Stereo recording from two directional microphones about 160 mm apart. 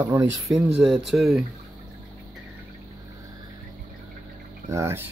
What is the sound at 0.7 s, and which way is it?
Speech, 5° right (ahead or behind).